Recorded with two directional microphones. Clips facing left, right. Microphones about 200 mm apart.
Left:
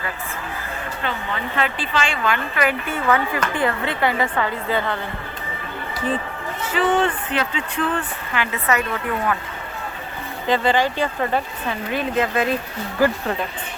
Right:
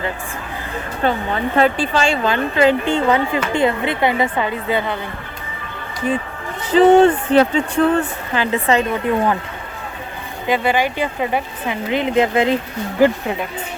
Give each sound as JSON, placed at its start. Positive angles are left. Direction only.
{"t": 1.0, "sound": "speech", "side_deg": -40}
{"t": 2.3, "sound": "speech", "side_deg": -25}
{"t": 6.6, "sound": "a sound", "side_deg": -15}
{"t": 7.0, "sound": "speech", "side_deg": -40}
{"t": 10.4, "sound": "speech", "side_deg": -10}